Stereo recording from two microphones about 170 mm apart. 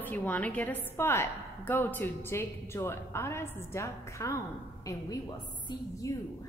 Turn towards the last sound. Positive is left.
turn(degrees=20)  # may be behind; listen again after turning